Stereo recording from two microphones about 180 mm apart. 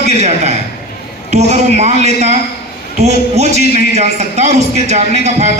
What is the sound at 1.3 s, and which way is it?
A man's voice, 40° right (ahead or behind).